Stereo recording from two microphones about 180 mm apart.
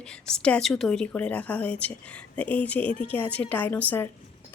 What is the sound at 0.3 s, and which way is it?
Speech, 5° left (ahead or behind).